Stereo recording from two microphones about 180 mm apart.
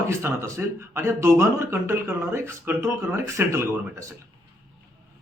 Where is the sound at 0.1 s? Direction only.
15° right (ahead or behind).